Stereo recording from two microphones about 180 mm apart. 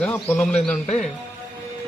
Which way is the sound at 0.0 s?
10° left (ahead or behind).